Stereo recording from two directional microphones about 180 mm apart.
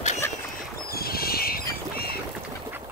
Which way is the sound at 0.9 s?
55° left (ahead or behind).